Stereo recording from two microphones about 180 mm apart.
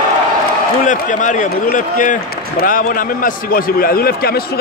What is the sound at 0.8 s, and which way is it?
Speech, 45° left (ahead or behind).